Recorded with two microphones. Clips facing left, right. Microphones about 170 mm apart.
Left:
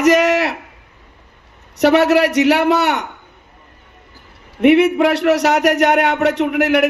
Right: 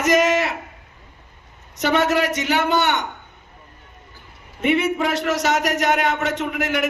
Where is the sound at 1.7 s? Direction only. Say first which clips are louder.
Left 7 dB; 70° left (ahead or behind).